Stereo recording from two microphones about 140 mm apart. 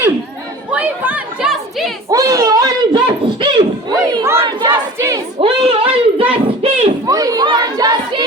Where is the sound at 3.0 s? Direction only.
40° right (ahead or behind).